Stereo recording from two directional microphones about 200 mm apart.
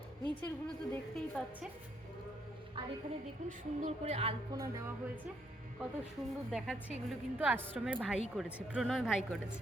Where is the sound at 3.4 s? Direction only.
35° right (ahead or behind).